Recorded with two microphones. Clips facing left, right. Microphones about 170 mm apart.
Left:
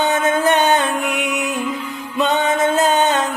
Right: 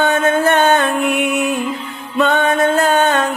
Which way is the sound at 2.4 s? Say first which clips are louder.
Right 2 dB; 20° left (ahead or behind).